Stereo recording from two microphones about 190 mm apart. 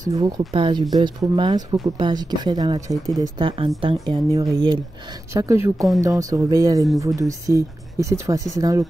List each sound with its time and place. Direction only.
0.1 s speech: 20° right (ahead or behind)